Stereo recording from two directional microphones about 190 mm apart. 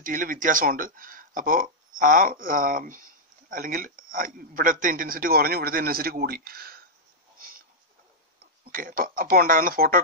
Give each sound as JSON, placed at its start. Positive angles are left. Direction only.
{"t": 0.0, "sound": "speech", "side_deg": -45}
{"t": 8.6, "sound": "speech", "side_deg": -50}